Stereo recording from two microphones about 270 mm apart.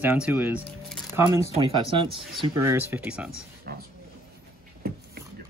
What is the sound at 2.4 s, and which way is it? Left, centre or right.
Speech, centre.